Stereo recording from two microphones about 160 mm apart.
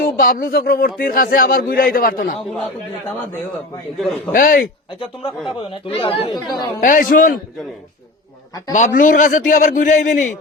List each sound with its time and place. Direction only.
0.0 s speech: 60° left (ahead or behind)
4.3 s speech: 60° left (ahead or behind)
5.5 s speech: 35° left (ahead or behind)
6.3 s speech: 25° left (ahead or behind)
6.7 s speech: 55° left (ahead or behind)
8.7 s a man's voice: 55° left (ahead or behind)